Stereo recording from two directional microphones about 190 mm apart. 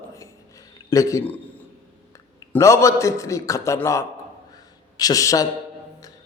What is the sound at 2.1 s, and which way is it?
A man's voice, 15° left (ahead or behind).